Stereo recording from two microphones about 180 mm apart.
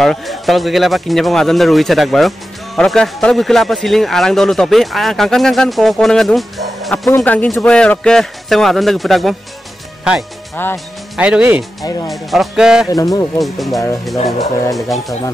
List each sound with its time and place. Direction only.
0.0 s speech: centre (ahead or behind)
10.5 s music: 10° left (ahead or behind)
11.1 s speech: 5° right (ahead or behind)
11.8 s speech: 20° left (ahead or behind)
12.1 s speech: centre (ahead or behind)
12.9 s speech: 20° left (ahead or behind)
13.4 s speech: centre (ahead or behind)